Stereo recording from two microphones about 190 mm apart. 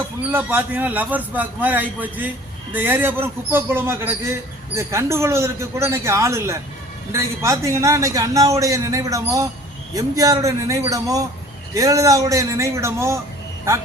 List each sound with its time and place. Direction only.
0.3 s speech: 10° right (ahead or behind)